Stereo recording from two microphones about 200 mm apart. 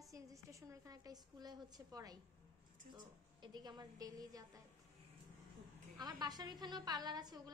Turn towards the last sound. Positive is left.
turn(degrees=-20)  # may be behind; listen again after turning